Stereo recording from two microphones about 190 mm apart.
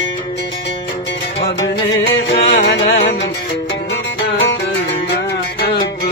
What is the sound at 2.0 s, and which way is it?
Music, 60° left (ahead or behind).